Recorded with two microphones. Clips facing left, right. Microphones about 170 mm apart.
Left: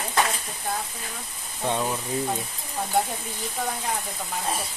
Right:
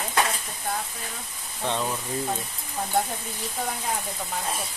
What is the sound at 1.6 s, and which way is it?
Speech, 10° left (ahead or behind).